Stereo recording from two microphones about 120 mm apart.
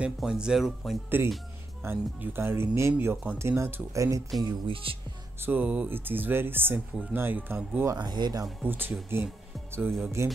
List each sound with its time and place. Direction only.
0.0 s speech: 5° right (ahead or behind)
1.1 s speech: 15° right (ahead or behind)
4.4 s speech: 40° right (ahead or behind)
5.4 s speech: 15° right (ahead or behind)
7.9 s speech: 35° right (ahead or behind)
8.6 s speech: 15° right (ahead or behind)